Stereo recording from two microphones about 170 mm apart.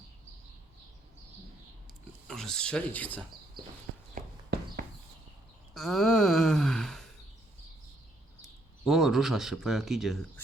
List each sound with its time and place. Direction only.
2.2 s speech: 5° left (ahead or behind)
4.1 s walk: 60° right (ahead or behind)
5.7 s speech: centre (ahead or behind)
8.8 s speech: centre (ahead or behind)